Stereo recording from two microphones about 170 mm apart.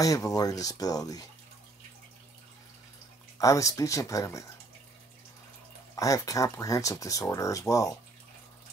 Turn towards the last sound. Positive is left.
turn(degrees=20)  # may be behind; listen again after turning